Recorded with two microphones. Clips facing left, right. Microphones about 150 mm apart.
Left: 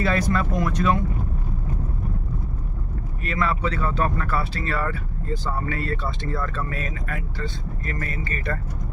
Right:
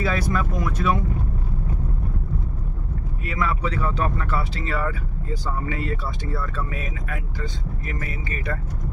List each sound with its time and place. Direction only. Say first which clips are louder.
0.0 s speech: left 2 dB; 5° right (ahead or behind)
3.3 s speech: left 1 dB; 15° right (ahead or behind)